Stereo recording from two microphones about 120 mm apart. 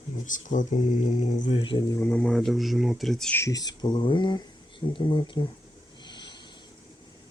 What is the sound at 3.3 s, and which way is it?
Speech, 30° left (ahead or behind).